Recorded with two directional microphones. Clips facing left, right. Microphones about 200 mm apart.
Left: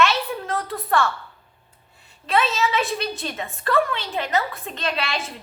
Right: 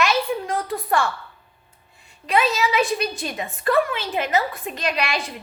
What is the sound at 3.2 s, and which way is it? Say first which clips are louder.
A woman's voice: right 3 dB; 15° right (ahead or behind).